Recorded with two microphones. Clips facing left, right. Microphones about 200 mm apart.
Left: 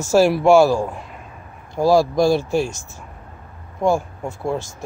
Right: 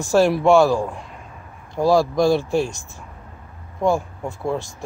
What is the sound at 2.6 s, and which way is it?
Speech, 40° left (ahead or behind).